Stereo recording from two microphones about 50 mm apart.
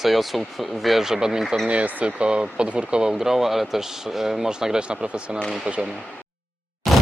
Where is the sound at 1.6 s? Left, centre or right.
Right.